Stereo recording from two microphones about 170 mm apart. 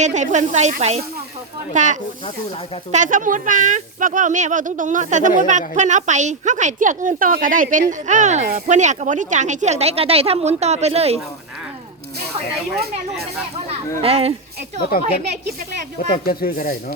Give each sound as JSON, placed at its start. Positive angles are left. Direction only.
{"t": 0.0, "sound": "a woman's voice", "side_deg": -45}
{"t": 14.0, "sound": "speech", "side_deg": -35}
{"t": 16.2, "sound": "speech", "side_deg": 60}